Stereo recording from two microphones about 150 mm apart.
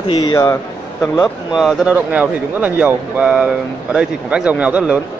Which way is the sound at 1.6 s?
5° right (ahead or behind).